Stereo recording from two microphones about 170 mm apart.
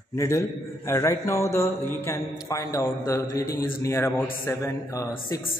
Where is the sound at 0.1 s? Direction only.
15° left (ahead or behind).